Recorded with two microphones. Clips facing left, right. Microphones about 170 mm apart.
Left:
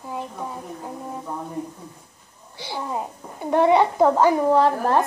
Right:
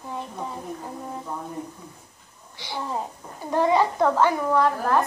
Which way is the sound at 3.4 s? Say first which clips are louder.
Left 4 dB; 20° left (ahead or behind).